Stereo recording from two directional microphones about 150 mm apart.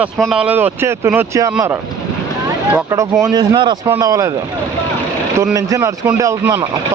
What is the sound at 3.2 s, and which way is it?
Speech, 30° right (ahead or behind).